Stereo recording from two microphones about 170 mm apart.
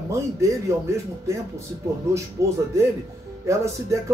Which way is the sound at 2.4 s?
15° right (ahead or behind).